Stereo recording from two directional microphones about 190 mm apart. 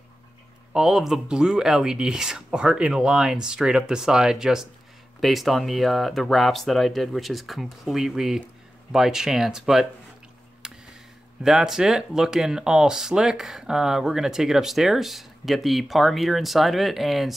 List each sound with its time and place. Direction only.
0.7 s speech: centre (ahead or behind)
10.6 s a sound: 5° right (ahead or behind)
11.4 s speech: centre (ahead or behind)